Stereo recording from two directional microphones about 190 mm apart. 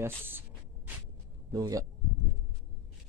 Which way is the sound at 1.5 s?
20° right (ahead or behind).